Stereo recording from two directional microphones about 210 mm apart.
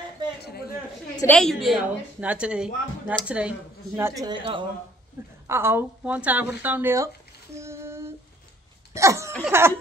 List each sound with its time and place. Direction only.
0.4 s a sound: 50° left (ahead or behind)
1.1 s a woman's voice: 10° left (ahead or behind); by 4.3 s 10° right (ahead or behind)
4.3 s a woman's voice: 25° right (ahead or behind)
5.5 s speech: 10° right (ahead or behind)
7.5 s child singing: 15° right (ahead or behind)
8.9 s speech: 15° right (ahead or behind)